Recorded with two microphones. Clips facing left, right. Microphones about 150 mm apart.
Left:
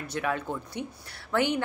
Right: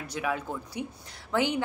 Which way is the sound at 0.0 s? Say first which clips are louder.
Left 1 dB; 10° right (ahead or behind).